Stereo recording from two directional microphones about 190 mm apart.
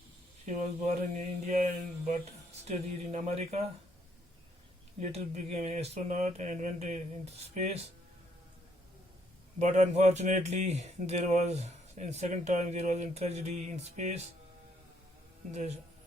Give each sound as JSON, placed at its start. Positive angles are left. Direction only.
{"t": 0.4, "sound": "speech", "side_deg": -40}
{"t": 2.6, "sound": "speech", "side_deg": -35}
{"t": 4.9, "sound": "speech", "side_deg": -35}
{"t": 9.6, "sound": "speech", "side_deg": -40}